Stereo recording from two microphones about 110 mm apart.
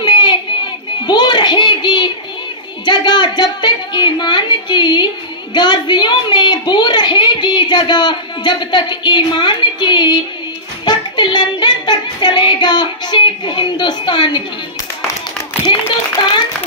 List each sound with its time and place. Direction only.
0.0 s child singing: 45° left (ahead or behind)
1.0 s a sound: 40° left (ahead or behind)
2.8 s a woman's voice: 45° left (ahead or behind)
10.9 s child singing: 45° left (ahead or behind)